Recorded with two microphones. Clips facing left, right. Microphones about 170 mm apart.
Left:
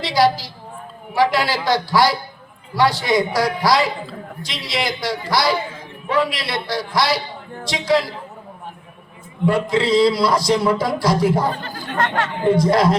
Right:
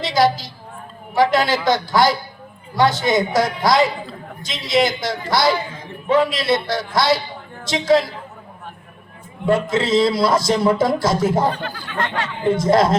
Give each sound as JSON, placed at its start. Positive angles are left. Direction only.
{"t": 0.0, "sound": "speech", "side_deg": -20}
{"t": 5.6, "sound": "a sound", "side_deg": 5}
{"t": 6.1, "sound": "speech", "side_deg": -25}
{"t": 9.5, "sound": "speech", "side_deg": -25}
{"t": 11.5, "sound": "speech", "side_deg": 45}
{"t": 12.5, "sound": "speech", "side_deg": -25}